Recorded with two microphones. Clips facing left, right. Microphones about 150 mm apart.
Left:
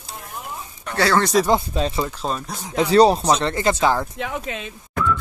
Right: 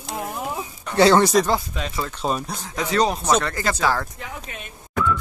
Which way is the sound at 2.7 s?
30° left (ahead or behind).